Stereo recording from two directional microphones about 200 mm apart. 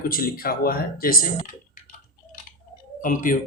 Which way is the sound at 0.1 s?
45° left (ahead or behind).